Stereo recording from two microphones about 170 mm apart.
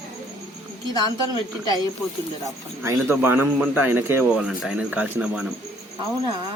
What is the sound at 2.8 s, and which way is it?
A man's voice, 15° right (ahead or behind).